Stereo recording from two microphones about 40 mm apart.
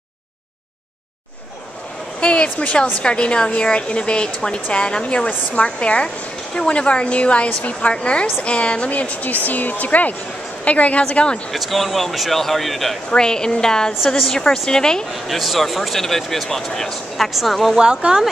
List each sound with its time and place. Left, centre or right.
2.1 s a woman's voice: left
7.9 s a woman's voice: left
11.5 s speech: centre
13.1 s speech: centre
14.0 s speech: centre
14.3 s speech: centre
15.2 s speech: centre
17.2 s speech: centre
17.7 s speech: right